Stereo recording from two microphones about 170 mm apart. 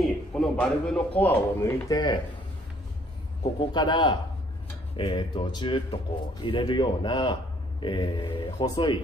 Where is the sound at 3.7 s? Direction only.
25° left (ahead or behind).